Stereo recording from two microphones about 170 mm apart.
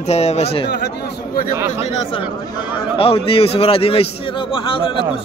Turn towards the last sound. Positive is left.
turn(degrees=30)  # may be behind; listen again after turning